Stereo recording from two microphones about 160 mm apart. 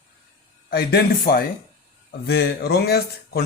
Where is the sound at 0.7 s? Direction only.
80° left.